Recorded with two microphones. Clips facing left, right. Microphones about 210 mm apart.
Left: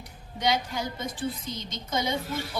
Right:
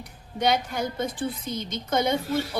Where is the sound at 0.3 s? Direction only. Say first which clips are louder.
Right 3 dB; 55° right (ahead or behind).